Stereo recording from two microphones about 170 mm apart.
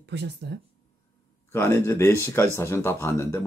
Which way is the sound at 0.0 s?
90° right.